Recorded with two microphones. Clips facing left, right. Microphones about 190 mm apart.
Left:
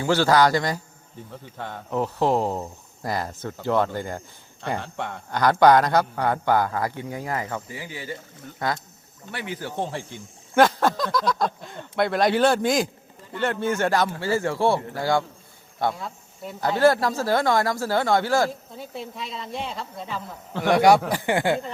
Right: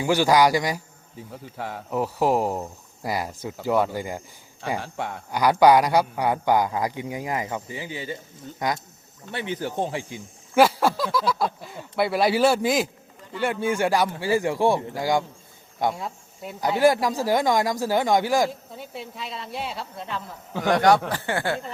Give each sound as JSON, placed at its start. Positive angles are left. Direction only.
{"t": 0.0, "sound": "a man's voice", "side_deg": -15}
{"t": 18.9, "sound": "a woman's voice", "side_deg": 0}